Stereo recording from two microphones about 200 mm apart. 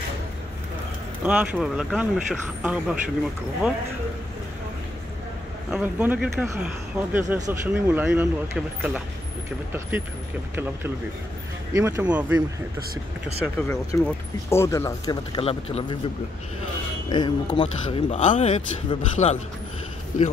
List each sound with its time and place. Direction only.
1.2 s speech: 5° right (ahead or behind)
5.7 s speech: 5° right (ahead or behind)
11.7 s speech: 15° right (ahead or behind)
13.6 s speech: 10° left (ahead or behind); by 16.0 s 25° left (ahead or behind)
17.1 s speech: 20° left (ahead or behind)